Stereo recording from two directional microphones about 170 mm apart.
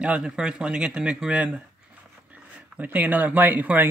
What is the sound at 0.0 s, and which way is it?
Speech, 5° right (ahead or behind).